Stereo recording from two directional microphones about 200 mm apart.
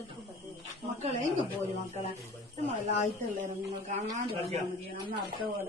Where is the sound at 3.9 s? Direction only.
35° right (ahead or behind).